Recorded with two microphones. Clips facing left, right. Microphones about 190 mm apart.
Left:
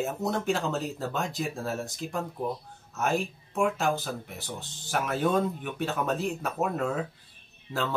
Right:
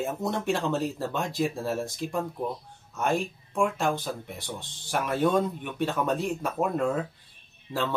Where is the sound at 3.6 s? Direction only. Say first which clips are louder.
Even; centre (ahead or behind).